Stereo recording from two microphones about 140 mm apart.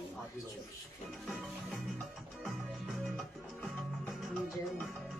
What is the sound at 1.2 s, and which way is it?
Speech, centre (ahead or behind).